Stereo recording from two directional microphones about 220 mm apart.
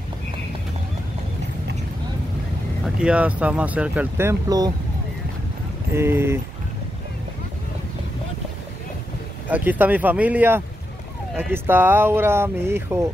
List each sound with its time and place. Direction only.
2.8 s speech: 5° right (ahead or behind)
5.9 s speech: 10° right (ahead or behind)
9.5 s speech: 10° right (ahead or behind)